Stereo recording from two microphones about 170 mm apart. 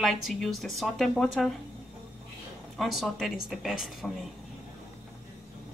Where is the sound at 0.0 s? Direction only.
Centre (ahead or behind).